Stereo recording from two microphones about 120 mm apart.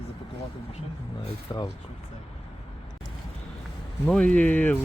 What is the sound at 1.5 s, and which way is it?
Speech, 35° left (ahead or behind).